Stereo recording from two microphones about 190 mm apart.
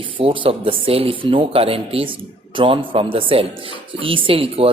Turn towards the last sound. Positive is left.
turn(degrees=-30)  # may be behind; listen again after turning